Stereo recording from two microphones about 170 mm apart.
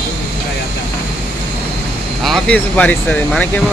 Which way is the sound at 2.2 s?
5° left (ahead or behind).